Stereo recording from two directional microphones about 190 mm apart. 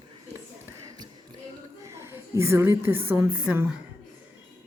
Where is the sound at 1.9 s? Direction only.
15° right (ahead or behind).